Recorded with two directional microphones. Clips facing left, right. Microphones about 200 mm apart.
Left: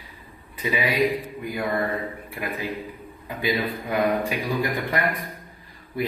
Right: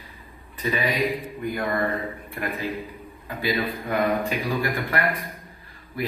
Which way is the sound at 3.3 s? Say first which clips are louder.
Even; 15° left (ahead or behind).